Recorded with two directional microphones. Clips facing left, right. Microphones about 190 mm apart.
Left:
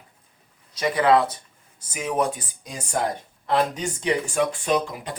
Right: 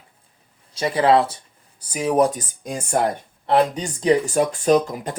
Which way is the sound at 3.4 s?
30° right (ahead or behind).